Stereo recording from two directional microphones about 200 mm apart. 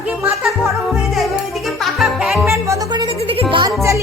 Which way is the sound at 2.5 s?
15° right (ahead or behind).